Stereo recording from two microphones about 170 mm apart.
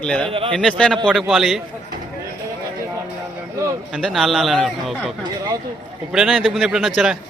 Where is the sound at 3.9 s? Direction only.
Centre (ahead or behind).